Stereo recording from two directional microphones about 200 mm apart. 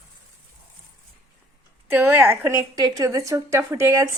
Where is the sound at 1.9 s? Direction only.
10° right (ahead or behind).